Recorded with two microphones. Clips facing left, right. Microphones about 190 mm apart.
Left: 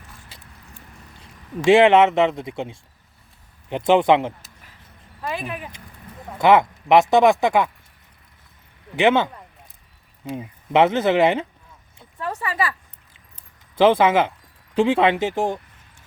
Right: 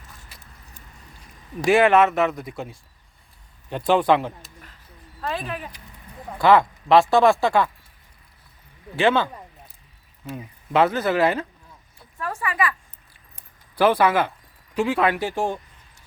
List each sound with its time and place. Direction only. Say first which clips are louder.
1.2 s speech: left 4 dB; 25° left (ahead or behind)
9.0 s speech: left 2 dB; 20° left (ahead or behind)
10.3 s speech: left 3 dB; 25° left (ahead or behind)
11.9 s a sound: left 2 dB; 25° left (ahead or behind)
13.7 s speech: left 3 dB; 20° left (ahead or behind)